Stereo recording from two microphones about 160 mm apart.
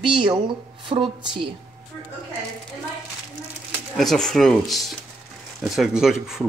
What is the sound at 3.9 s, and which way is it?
Speech, centre (ahead or behind).